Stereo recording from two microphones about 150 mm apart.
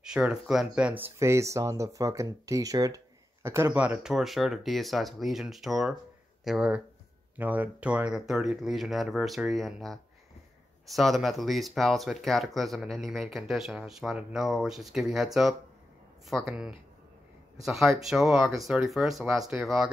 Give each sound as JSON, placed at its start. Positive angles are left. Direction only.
{"t": 0.0, "sound": "speech", "side_deg": -5}